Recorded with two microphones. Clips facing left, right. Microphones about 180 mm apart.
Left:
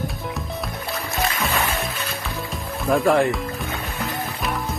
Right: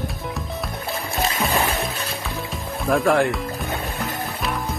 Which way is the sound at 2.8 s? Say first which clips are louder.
Left 1 dB; centre (ahead or behind).